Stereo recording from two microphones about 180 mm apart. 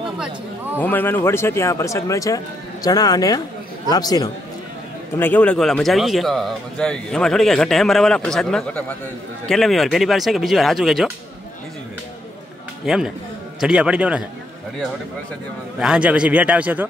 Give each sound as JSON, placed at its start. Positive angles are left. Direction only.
{"t": 0.7, "sound": "a man's voice", "side_deg": 10}
{"t": 5.1, "sound": "speech", "side_deg": 10}
{"t": 12.8, "sound": "speech", "side_deg": -5}
{"t": 15.8, "sound": "a man's voice", "side_deg": -5}